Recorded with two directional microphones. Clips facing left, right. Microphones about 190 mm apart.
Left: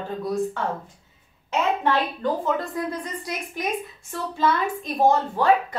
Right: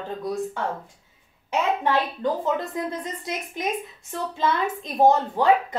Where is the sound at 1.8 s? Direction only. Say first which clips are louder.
Even; 20° right (ahead or behind).